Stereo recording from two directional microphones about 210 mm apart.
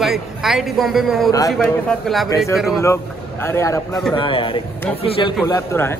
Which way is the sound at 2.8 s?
15° left (ahead or behind).